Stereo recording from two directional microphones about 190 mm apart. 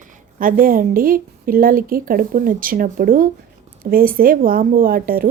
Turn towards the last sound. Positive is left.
turn(degrees=-50)  # may be behind; listen again after turning